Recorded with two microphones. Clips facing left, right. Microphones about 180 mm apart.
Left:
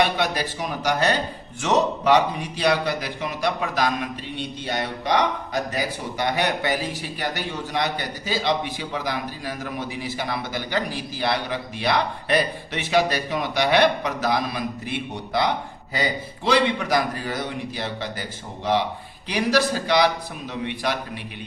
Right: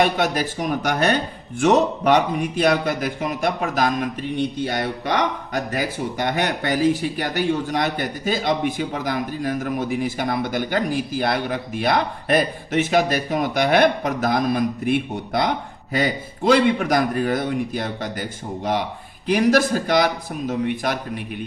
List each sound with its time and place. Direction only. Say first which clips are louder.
0.0 s a man's voice: right 3 dB; 45° right (ahead or behind)